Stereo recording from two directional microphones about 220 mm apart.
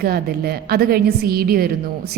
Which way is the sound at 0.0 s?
45° right (ahead or behind).